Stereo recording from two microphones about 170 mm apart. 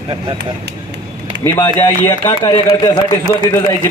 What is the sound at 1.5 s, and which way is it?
Speech, 25° left (ahead or behind).